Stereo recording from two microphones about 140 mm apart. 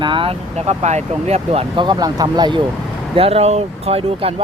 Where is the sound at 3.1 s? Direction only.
45° right (ahead or behind).